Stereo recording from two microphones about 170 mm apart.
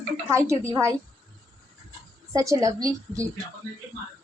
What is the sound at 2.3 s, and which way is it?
A woman's voice, 20° right (ahead or behind).